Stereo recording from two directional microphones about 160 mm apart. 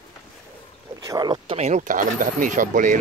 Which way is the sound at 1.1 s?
25° right (ahead or behind).